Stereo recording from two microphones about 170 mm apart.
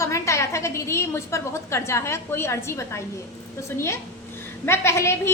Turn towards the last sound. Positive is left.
turn(degrees=15)  # may be behind; listen again after turning